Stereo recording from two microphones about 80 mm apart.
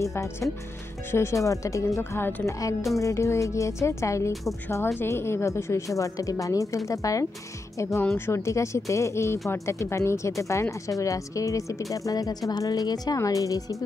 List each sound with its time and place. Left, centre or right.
0.0 s speech: left
2.0 s speech: left
3.0 s a woman's voice: left